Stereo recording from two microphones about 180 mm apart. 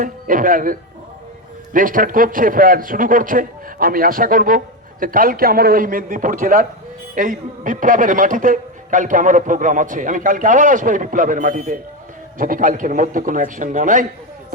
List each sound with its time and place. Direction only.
0.0 s a man's voice: 50° right (ahead or behind)